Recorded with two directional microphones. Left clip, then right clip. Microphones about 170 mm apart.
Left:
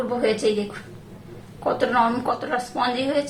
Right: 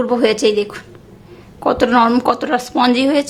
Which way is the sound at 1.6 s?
70° right (ahead or behind).